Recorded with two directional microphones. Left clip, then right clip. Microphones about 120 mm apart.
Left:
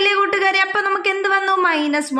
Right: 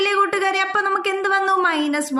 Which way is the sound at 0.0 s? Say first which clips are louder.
Left 2 dB; 20° left (ahead or behind).